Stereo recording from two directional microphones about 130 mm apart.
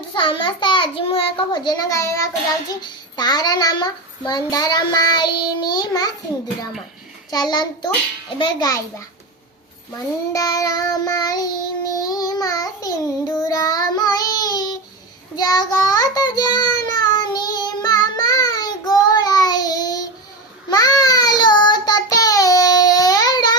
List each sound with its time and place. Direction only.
0.1 s a child's voice: 40° left (ahead or behind)
7.3 s a child's voice: 30° left (ahead or behind)
10.3 s child singing: 25° left (ahead or behind)